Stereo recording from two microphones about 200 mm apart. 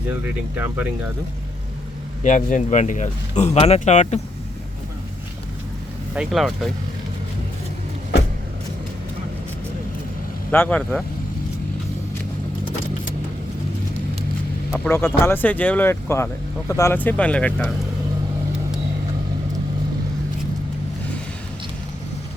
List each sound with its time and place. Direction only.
0.1 s speech: 10° right (ahead or behind)
2.2 s a man's voice: 40° left (ahead or behind)
6.1 s speech: centre (ahead or behind)
10.5 s speech: 10° left (ahead or behind)
14.8 s speech: 10° left (ahead or behind)